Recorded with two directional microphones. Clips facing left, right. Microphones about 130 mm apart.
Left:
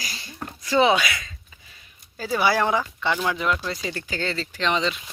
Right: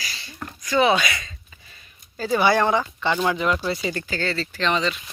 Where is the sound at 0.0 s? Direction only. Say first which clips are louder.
Even; 45° left (ahead or behind).